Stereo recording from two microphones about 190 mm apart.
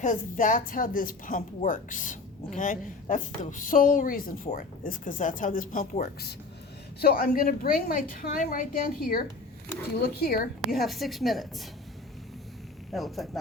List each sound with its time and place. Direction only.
0.0 s speech: 40° left (ahead or behind)
10.8 s a woman's voice: centre (ahead or behind)
12.9 s a woman's voice: centre (ahead or behind)